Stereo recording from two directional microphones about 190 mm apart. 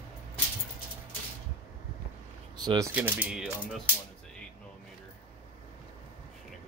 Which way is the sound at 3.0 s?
5° right (ahead or behind).